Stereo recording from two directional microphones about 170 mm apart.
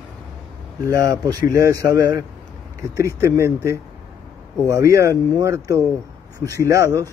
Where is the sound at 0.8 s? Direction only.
20° right (ahead or behind).